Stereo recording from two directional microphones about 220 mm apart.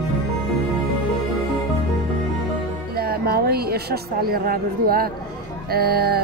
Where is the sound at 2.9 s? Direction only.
45° right (ahead or behind).